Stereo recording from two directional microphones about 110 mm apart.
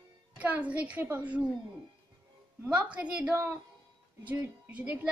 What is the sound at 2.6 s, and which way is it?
Speech, 10° right (ahead or behind).